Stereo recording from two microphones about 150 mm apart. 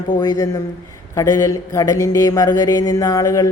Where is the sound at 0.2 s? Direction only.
25° left (ahead or behind).